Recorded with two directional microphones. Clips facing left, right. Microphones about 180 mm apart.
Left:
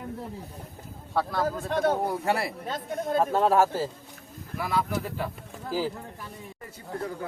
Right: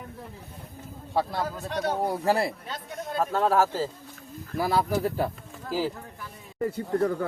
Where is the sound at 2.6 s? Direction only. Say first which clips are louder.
Left 5 dB; 45° left (ahead or behind).